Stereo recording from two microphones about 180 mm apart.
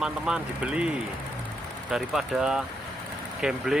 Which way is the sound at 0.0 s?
5° right (ahead or behind).